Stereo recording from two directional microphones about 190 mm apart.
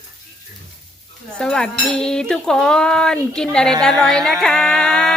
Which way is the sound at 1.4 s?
5° left (ahead or behind).